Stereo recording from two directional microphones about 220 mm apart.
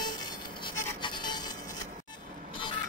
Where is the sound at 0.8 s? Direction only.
20° left (ahead or behind).